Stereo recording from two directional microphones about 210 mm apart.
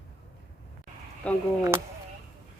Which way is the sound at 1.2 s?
5° left (ahead or behind).